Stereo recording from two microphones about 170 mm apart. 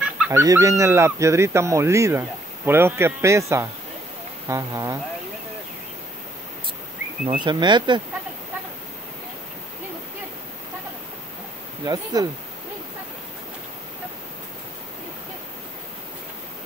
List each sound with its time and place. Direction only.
0.0 s fowl: 5° right (ahead or behind)
0.4 s speech: 20° right (ahead or behind)
7.4 s speech: 25° right (ahead or behind)
11.8 s speech: 25° right (ahead or behind)